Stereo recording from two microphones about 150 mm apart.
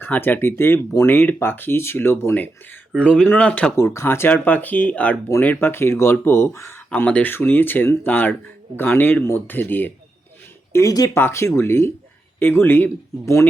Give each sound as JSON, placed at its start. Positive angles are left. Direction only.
{"t": 0.0, "sound": "speech", "side_deg": 15}